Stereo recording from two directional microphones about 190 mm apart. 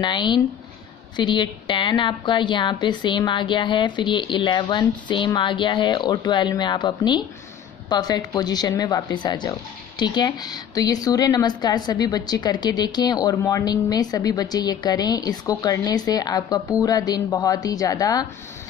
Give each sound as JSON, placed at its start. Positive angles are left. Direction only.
{"t": 0.0, "sound": "speech", "side_deg": 25}